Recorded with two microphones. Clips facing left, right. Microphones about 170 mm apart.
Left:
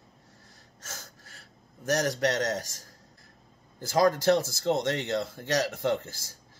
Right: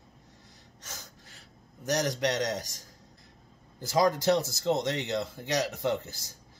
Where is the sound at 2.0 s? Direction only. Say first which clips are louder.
Left 1 dB; 45° left (ahead or behind).